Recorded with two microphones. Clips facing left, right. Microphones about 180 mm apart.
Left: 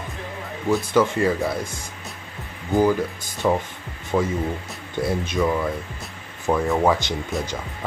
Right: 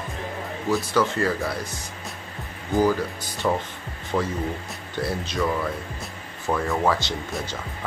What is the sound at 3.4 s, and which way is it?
Speech, 15° left (ahead or behind).